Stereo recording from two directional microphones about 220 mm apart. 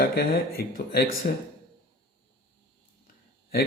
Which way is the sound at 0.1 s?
45° left (ahead or behind).